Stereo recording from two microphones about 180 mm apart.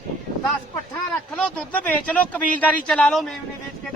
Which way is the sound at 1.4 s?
5° left (ahead or behind).